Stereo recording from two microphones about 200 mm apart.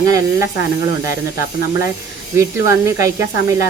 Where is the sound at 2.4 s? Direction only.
15° right (ahead or behind).